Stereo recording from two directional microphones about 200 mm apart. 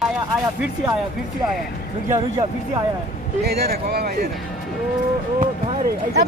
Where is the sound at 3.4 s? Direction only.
50° right (ahead or behind).